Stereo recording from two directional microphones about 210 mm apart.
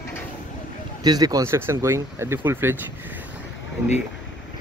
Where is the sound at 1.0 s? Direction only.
20° right (ahead or behind).